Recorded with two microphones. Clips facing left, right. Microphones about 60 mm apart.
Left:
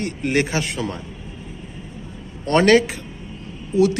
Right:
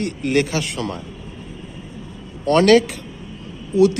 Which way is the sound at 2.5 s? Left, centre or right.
Centre.